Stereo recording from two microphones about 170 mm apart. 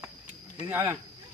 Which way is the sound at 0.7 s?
10° right (ahead or behind).